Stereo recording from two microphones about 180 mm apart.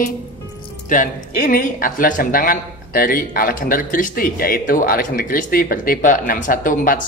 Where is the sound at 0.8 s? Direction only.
45° left (ahead or behind).